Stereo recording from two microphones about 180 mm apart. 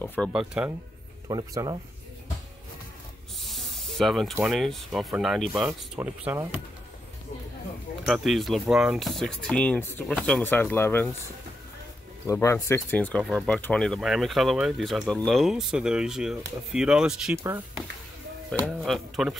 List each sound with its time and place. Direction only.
0.0 s speech: 10° left (ahead or behind)
0.3 s speech: 5° right (ahead or behind)
1.3 s speech: 20° right (ahead or behind)
3.4 s spray: centre (ahead or behind)
4.4 s speech: centre (ahead or behind)
8.1 s speech: centre (ahead or behind)
12.3 s speech: 15° left (ahead or behind); by 17.4 s 5° right (ahead or behind)
17.4 s speech: 15° right (ahead or behind)
18.8 s speech: centre (ahead or behind)